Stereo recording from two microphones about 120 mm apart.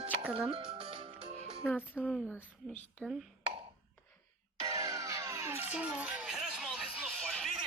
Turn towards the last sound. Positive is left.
turn(degrees=5)  # may be behind; listen again after turning